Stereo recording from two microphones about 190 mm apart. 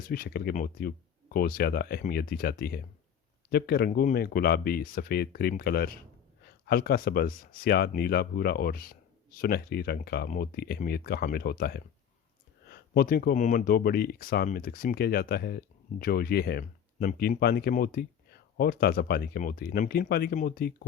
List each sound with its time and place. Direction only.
0.1 s speech: 55° left (ahead or behind)